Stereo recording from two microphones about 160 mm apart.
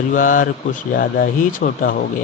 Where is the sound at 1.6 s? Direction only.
65° left (ahead or behind).